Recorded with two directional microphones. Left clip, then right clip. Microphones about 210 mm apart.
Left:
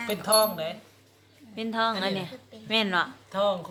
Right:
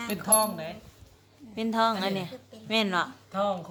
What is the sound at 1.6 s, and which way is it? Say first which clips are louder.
Speech: right 1 dB; 15° right (ahead or behind).